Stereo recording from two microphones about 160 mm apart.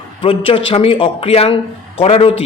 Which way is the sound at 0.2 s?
35° left (ahead or behind).